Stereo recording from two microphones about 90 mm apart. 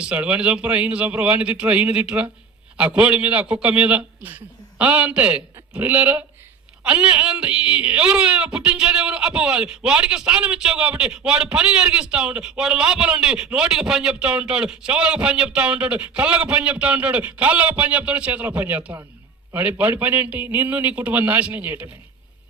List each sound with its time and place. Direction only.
0.0 s speech: 15° right (ahead or behind)